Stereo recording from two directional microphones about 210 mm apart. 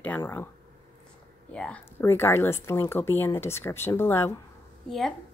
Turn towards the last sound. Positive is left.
turn(degrees=0)  # may be behind; listen again after turning